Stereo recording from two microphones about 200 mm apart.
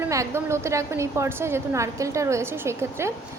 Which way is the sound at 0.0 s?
15° right (ahead or behind).